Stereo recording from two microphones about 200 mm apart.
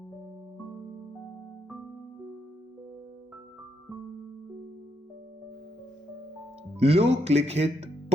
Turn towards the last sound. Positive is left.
turn(degrees=-35)  # may be behind; listen again after turning